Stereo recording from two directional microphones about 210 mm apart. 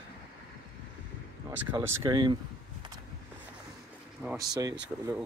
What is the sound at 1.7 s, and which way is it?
Speech, 15° right (ahead or behind).